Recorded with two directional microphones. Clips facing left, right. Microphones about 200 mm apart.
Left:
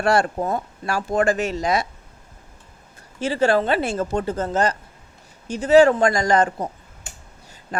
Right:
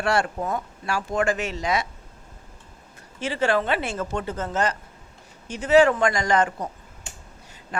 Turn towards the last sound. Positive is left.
turn(degrees=35)  # may be behind; listen again after turning